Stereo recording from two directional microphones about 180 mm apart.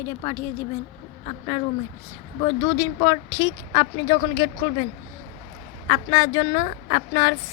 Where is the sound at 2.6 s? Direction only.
20° left (ahead or behind).